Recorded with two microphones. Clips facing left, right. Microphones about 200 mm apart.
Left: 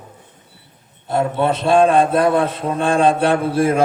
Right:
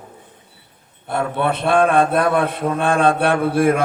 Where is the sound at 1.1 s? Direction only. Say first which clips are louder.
Left 3 dB; 20° left (ahead or behind).